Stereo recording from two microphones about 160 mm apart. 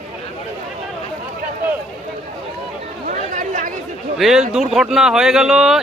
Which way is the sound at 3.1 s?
50° right (ahead or behind).